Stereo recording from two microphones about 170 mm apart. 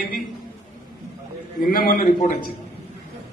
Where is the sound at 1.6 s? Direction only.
55° left (ahead or behind).